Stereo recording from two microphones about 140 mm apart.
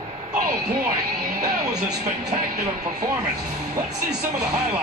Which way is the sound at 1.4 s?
25° right (ahead or behind).